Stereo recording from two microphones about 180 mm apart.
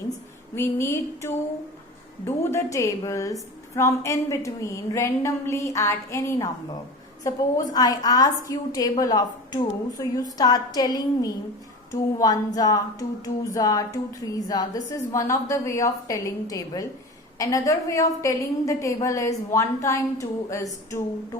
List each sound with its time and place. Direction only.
0.5 s a woman's voice: 15° left (ahead or behind)